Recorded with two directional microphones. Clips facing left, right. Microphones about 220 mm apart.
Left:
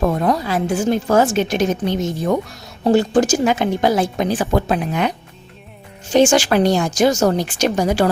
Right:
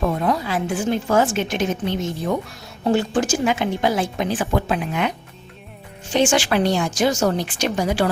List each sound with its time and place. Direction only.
0.0 s a woman's voice: 40° left (ahead or behind)
6.1 s a woman's voice: 40° left (ahead or behind)